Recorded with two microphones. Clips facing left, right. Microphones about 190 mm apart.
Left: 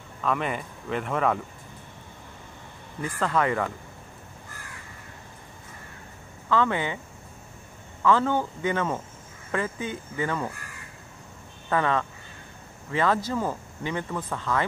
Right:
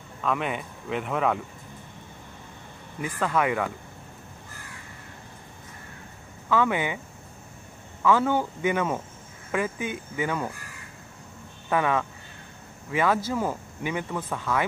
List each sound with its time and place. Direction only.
0.2 s speech: centre (ahead or behind)
3.0 s speech: 5° right (ahead or behind)
6.5 s speech: 10° right (ahead or behind)
8.0 s speech: 10° right (ahead or behind)
11.7 s speech: 10° right (ahead or behind)